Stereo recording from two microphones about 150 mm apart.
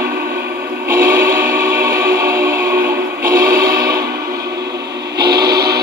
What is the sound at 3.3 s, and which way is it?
Music, 75° right (ahead or behind).